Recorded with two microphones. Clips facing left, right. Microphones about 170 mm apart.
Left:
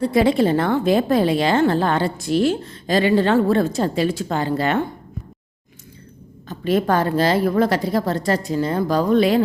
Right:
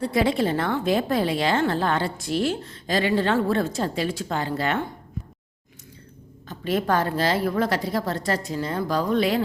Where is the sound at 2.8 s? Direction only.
40° left (ahead or behind).